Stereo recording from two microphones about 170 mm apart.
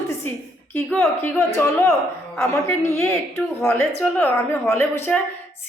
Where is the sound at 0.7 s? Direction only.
10° left (ahead or behind).